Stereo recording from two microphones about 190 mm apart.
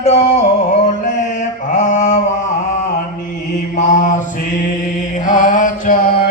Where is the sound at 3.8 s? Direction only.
40° left (ahead or behind).